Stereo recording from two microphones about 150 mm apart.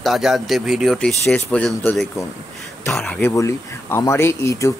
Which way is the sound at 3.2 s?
20° left (ahead or behind).